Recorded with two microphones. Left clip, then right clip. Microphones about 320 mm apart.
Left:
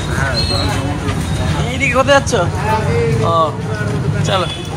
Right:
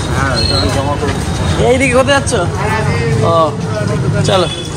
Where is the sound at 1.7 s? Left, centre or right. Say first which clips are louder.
Right 7 dB; centre.